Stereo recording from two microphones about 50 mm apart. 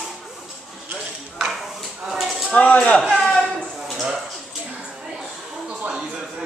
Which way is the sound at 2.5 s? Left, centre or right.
Left.